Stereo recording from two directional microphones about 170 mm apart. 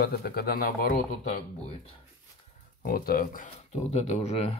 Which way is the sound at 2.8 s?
60° left (ahead or behind).